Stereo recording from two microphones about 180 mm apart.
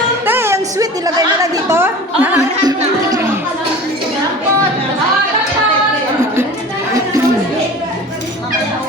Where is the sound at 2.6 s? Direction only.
20° right (ahead or behind).